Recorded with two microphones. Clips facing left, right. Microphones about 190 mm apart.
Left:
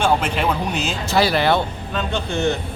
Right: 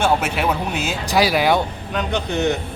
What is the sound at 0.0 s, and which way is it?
Speech, 5° right (ahead or behind).